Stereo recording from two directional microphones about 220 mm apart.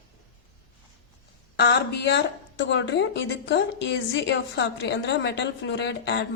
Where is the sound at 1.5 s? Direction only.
50° left (ahead or behind).